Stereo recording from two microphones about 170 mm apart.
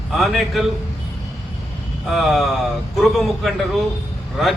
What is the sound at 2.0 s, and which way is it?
A man's voice, centre (ahead or behind).